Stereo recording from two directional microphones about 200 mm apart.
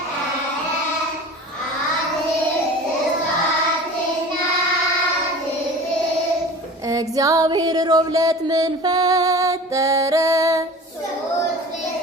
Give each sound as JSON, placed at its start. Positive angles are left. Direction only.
{"t": 6.8, "sound": "female singing", "side_deg": -15}